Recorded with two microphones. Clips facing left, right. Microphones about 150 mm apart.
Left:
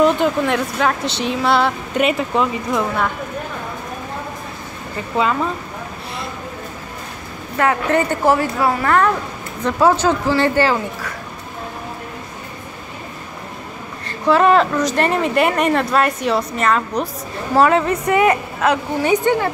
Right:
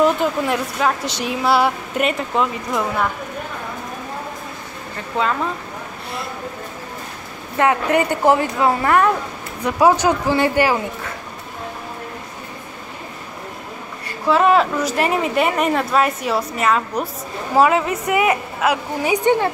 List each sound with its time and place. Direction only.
0.0 s speech: 5° right (ahead or behind)
7.5 s a woman's voice: 15° right (ahead or behind)
14.2 s a woman's voice: 5° right (ahead or behind)